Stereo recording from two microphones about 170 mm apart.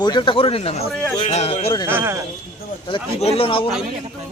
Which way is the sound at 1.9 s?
10° right (ahead or behind).